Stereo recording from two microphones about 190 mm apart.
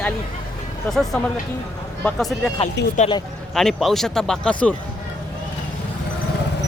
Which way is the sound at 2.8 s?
65° left (ahead or behind).